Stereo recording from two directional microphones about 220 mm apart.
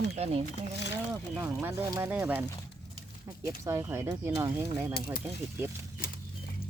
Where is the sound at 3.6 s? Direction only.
10° right (ahead or behind).